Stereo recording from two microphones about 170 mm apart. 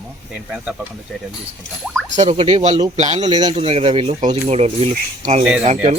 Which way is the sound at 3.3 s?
25° right (ahead or behind).